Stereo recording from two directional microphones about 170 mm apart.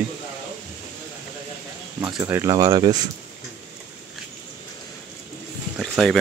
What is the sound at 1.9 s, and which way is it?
Speech, 20° right (ahead or behind).